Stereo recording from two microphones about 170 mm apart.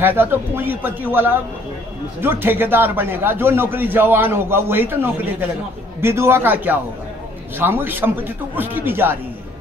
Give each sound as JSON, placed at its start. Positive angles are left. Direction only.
{"t": 0.0, "sound": "a man's voice", "side_deg": -10}